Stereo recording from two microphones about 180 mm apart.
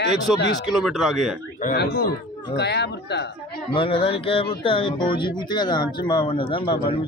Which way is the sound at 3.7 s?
30° left (ahead or behind).